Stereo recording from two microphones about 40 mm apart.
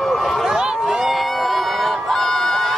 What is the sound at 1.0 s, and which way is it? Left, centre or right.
Crowd, centre.